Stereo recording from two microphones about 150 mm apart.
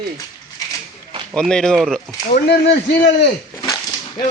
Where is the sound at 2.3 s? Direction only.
90° left.